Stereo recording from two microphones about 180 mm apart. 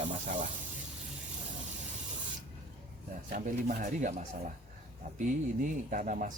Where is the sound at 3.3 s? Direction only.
40° right (ahead or behind).